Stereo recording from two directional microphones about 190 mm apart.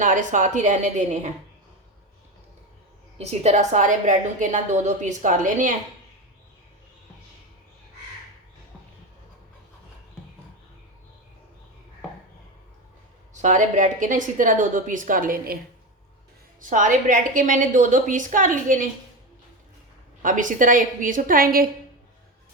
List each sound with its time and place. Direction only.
0.0 s a woman's voice: 40° right (ahead or behind)
3.2 s a woman's voice: 35° right (ahead or behind)
13.3 s a woman's voice: 40° right (ahead or behind)
16.6 s a woman's voice: 45° right (ahead or behind)
20.2 s a woman's voice: 45° right (ahead or behind)